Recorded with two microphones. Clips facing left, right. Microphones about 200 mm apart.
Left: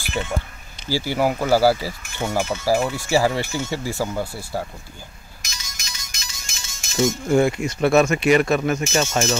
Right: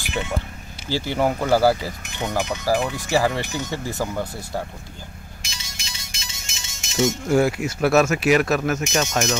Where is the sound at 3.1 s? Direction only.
10° left (ahead or behind).